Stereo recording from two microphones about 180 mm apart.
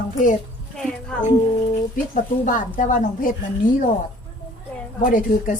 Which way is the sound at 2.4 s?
45° left (ahead or behind).